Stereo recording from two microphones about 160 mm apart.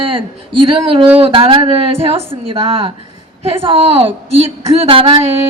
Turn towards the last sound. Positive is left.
turn(degrees=-35)  # may be behind; listen again after turning